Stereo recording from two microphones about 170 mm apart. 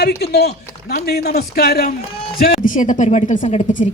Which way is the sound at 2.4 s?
50° left (ahead or behind).